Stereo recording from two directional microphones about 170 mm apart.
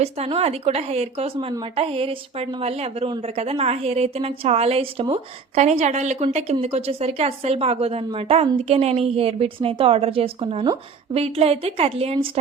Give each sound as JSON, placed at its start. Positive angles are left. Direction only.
{"t": 0.0, "sound": "a woman's voice", "side_deg": -40}